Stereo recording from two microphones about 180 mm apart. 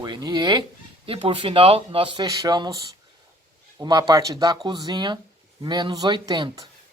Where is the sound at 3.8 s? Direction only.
20° right (ahead or behind).